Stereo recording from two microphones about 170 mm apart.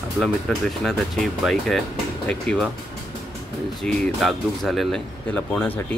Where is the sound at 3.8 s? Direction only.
Centre (ahead or behind).